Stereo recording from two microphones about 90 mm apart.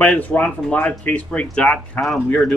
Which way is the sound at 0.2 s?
20° left (ahead or behind).